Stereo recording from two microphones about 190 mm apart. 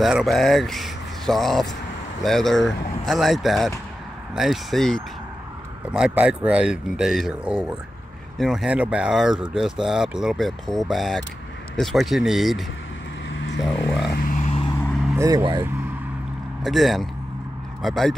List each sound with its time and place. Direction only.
0.0 s speech: centre (ahead or behind)
13.3 s vehicle: 75° left (ahead or behind)
13.6 s a sound: centre (ahead or behind)
14.0 s vehicle: 50° left (ahead or behind)
15.1 s speech: 20° right (ahead or behind)
16.6 s speech: centre (ahead or behind)